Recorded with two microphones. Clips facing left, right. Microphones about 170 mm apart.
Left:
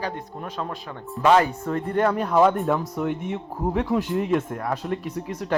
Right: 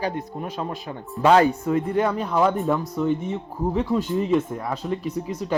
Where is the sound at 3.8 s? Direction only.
5° left (ahead or behind).